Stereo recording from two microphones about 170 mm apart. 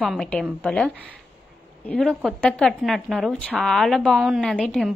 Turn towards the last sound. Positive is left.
turn(degrees=0)  # may be behind; listen again after turning